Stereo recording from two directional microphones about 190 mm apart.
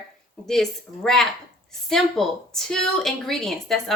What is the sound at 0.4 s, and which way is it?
Speech, centre (ahead or behind).